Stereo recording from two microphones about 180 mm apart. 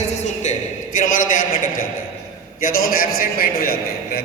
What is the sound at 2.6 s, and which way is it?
A man's voice, 50° left (ahead or behind).